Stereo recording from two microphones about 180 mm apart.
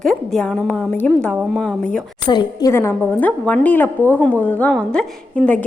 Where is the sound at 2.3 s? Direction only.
25° left (ahead or behind).